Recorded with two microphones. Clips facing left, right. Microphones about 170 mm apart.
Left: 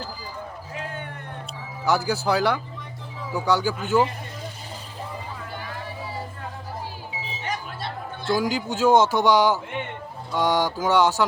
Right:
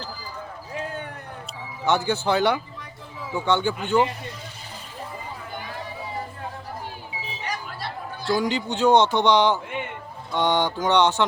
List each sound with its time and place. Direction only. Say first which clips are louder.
1.8 s speech: even; centre (ahead or behind)
7.4 s music: left 1 dB; 25° left (ahead or behind)
8.2 s speech: even; centre (ahead or behind)